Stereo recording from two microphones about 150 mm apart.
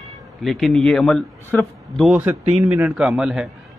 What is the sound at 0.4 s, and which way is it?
Speech, centre (ahead or behind).